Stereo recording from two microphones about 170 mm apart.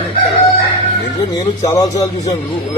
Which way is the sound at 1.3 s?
20° left (ahead or behind).